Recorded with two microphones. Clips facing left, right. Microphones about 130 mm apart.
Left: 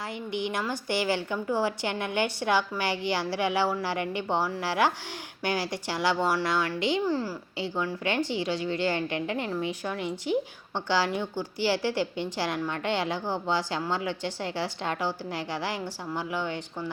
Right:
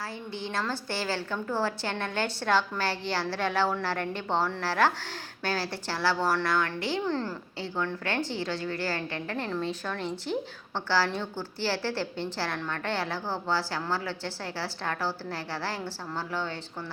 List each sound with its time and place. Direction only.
0.3 s a woman's voice: 15° left (ahead or behind)
7.0 s a woman's voice: 10° left (ahead or behind)